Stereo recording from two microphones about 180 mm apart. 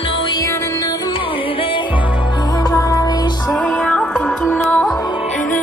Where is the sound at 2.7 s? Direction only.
20° left (ahead or behind).